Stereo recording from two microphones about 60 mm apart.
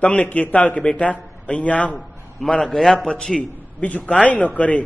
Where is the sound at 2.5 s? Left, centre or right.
Centre.